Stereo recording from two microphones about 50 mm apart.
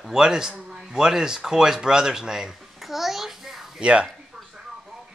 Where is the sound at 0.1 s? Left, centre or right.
Centre.